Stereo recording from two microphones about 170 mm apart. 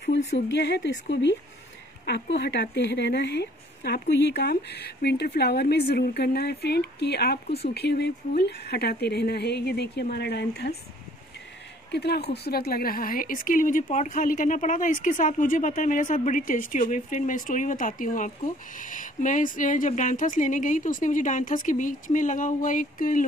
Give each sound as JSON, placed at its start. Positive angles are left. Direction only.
{"t": 0.3, "sound": "speech", "side_deg": 90}
{"t": 2.0, "sound": "speech", "side_deg": 90}
{"t": 11.9, "sound": "a woman's voice", "side_deg": 75}